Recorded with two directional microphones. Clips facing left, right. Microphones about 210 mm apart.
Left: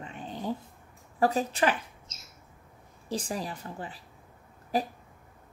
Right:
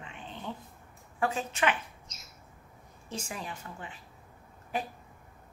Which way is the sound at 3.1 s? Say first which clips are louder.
Left 6 dB; 35° left (ahead or behind).